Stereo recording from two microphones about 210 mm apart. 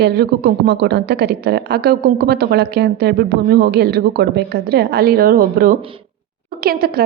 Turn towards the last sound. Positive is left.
turn(degrees=-45)  # may be behind; listen again after turning